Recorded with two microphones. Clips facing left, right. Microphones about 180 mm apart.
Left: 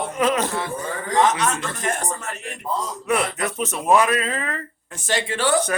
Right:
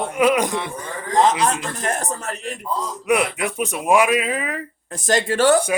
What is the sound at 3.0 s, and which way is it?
Speech, 10° right (ahead or behind).